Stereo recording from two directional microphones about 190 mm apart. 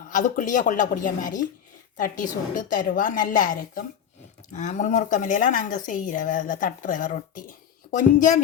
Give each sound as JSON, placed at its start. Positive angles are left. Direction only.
{"t": 0.1, "sound": "speech", "side_deg": 45}